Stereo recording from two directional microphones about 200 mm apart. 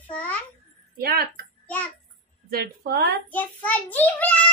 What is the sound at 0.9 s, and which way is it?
Speech, 50° right (ahead or behind).